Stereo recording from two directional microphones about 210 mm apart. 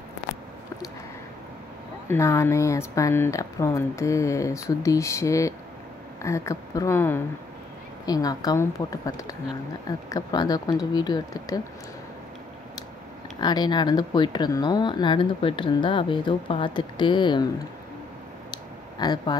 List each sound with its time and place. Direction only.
2.0 s speech: 15° left (ahead or behind)
13.4 s speech: 20° left (ahead or behind)
18.5 s a sound: 20° left (ahead or behind)